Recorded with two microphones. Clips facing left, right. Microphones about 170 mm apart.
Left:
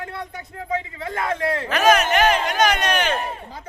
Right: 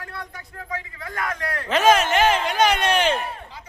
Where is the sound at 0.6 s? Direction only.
25° left (ahead or behind).